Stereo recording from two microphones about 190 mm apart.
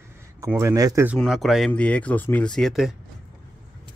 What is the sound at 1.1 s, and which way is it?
Speech, centre (ahead or behind).